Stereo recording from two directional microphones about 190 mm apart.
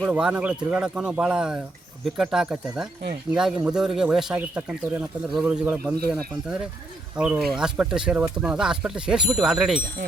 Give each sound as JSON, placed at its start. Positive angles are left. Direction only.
{"t": 0.1, "sound": "speech", "side_deg": -5}